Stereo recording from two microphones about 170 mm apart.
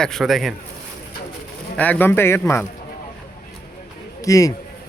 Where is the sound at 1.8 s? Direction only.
10° left (ahead or behind).